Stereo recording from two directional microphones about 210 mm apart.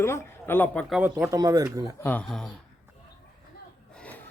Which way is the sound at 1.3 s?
15° right (ahead or behind).